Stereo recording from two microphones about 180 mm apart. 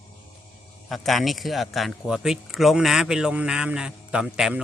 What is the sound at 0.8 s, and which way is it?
A man's voice, centre (ahead or behind).